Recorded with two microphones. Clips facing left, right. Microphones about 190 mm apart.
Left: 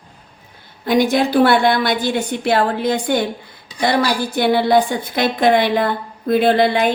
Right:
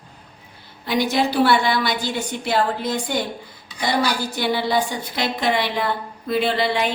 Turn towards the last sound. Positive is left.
turn(degrees=50)  # may be behind; listen again after turning